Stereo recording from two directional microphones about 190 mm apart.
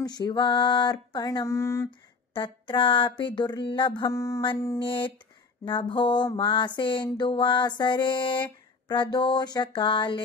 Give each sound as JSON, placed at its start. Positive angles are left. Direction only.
{"t": 0.0, "sound": "mantra", "side_deg": 20}
{"t": 2.3, "sound": "mantra", "side_deg": 25}